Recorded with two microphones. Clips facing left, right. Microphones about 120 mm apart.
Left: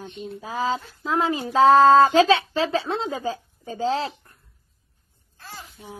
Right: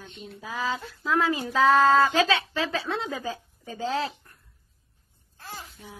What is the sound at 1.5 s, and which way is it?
Speech, 35° left (ahead or behind).